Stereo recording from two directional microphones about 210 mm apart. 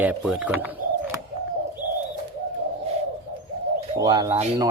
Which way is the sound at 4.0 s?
20° right (ahead or behind).